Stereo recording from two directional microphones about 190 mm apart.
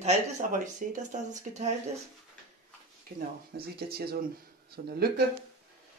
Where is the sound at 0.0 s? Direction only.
40° right (ahead or behind).